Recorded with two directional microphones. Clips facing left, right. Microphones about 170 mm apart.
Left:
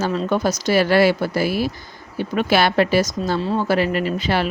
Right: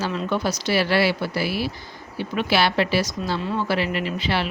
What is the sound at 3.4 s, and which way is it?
Speech, 30° left (ahead or behind).